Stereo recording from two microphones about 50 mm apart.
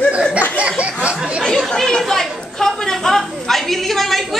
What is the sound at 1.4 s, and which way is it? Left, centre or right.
Chatter, centre.